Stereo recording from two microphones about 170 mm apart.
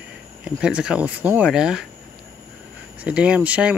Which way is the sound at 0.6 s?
5° right (ahead or behind).